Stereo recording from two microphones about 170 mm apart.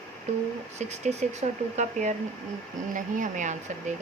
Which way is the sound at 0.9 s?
40° right (ahead or behind).